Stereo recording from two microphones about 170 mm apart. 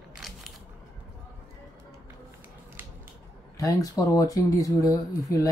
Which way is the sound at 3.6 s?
20° left (ahead or behind).